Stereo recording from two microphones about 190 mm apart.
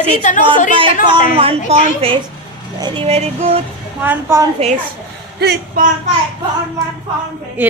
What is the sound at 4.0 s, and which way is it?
Speech, 10° right (ahead or behind).